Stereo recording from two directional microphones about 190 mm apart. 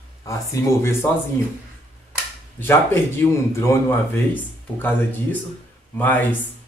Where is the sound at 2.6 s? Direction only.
15° left (ahead or behind).